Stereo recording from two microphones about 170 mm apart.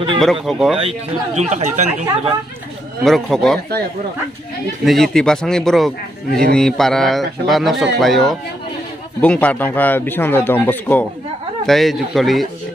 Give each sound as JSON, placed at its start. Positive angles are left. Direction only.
{"t": 0.2, "sound": "speech", "side_deg": 0}
{"t": 0.7, "sound": "speech", "side_deg": -40}
{"t": 3.0, "sound": "speech", "side_deg": 0}
{"t": 4.8, "sound": "a man's voice", "side_deg": 0}